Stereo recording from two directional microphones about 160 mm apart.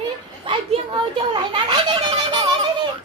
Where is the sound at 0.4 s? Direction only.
30° right (ahead or behind).